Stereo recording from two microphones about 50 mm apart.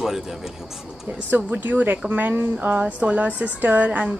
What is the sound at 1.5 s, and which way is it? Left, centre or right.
A woman's voice, right.